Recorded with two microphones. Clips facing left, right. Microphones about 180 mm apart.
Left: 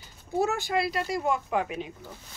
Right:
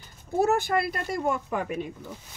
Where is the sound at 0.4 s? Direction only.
55° right (ahead or behind).